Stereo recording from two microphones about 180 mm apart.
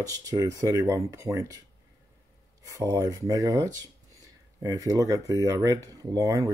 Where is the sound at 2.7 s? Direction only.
20° right (ahead or behind).